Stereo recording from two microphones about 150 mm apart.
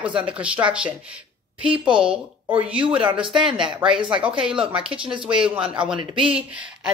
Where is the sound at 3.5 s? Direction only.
30° right (ahead or behind).